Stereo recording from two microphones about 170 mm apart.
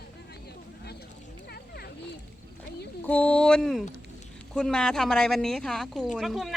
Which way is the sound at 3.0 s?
10° left (ahead or behind).